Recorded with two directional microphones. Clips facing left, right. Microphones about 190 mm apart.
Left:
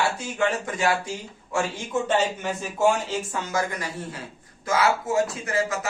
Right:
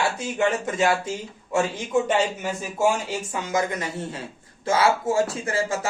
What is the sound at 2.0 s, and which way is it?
Speech, 10° right (ahead or behind).